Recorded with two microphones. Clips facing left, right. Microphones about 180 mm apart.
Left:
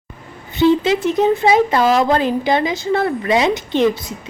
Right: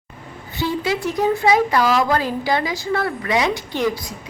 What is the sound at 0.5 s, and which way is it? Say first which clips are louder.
A woman's voice: left 8 dB; 20° left (ahead or behind).